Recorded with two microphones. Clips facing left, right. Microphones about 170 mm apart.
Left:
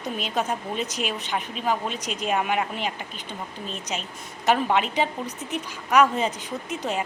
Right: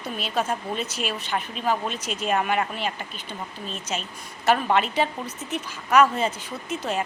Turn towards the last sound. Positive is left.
turn(degrees=15)  # may be behind; listen again after turning